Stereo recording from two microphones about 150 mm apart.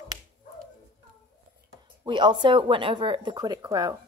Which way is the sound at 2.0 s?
30° right (ahead or behind).